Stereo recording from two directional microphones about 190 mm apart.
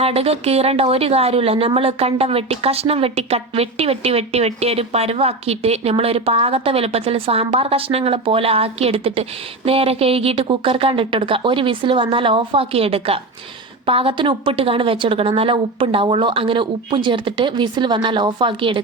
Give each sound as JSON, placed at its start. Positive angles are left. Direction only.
{"t": 0.0, "sound": "a woman's voice", "side_deg": -30}